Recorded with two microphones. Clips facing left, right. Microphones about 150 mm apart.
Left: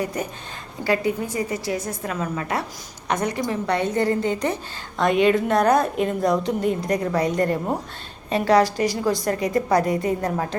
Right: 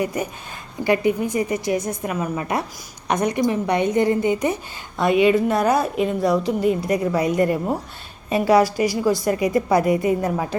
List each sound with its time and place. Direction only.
0.0 s a woman's voice: 10° right (ahead or behind)